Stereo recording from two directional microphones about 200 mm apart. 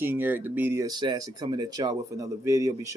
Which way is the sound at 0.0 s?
10° right (ahead or behind).